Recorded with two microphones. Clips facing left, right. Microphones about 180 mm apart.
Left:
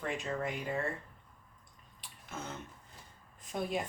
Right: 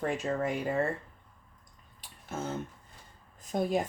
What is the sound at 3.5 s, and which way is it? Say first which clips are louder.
Speech: right 6 dB; 40° right (ahead or behind).